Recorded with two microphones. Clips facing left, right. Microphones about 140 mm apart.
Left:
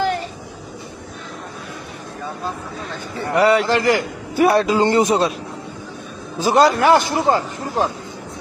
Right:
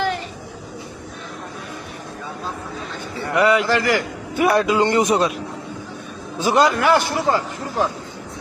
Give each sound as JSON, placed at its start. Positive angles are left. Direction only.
{"t": 3.3, "sound": "a man's voice", "side_deg": 30}
{"t": 6.4, "sound": "a man's voice", "side_deg": 35}